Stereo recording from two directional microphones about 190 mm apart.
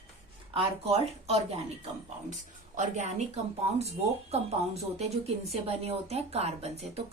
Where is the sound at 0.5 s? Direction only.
30° right (ahead or behind).